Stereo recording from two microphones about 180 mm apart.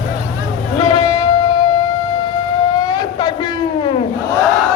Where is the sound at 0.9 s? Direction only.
20° left (ahead or behind).